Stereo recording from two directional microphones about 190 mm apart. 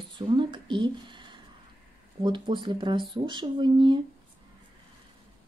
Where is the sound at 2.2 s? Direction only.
25° right (ahead or behind).